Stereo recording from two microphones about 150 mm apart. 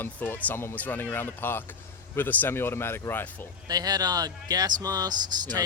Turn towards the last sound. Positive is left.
turn(degrees=-25)  # may be behind; listen again after turning